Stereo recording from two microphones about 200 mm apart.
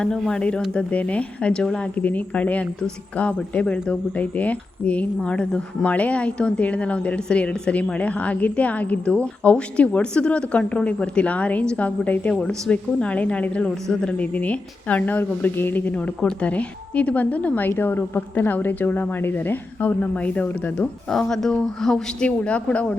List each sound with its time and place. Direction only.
0.0 s speech: 5° left (ahead or behind)